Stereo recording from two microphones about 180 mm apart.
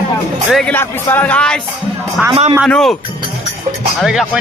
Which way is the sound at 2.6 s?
5° left (ahead or behind).